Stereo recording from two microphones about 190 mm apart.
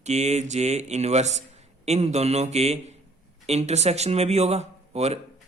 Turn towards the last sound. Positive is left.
turn(degrees=-35)  # may be behind; listen again after turning